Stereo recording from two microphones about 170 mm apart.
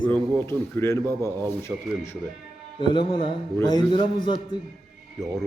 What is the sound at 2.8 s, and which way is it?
A man's voice, 30° left (ahead or behind).